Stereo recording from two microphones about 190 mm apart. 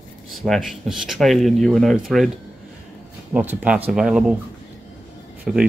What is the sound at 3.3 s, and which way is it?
Speech, 5° right (ahead or behind).